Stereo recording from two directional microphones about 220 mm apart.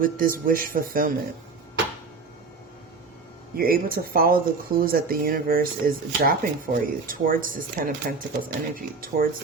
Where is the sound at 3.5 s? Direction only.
40° right (ahead or behind).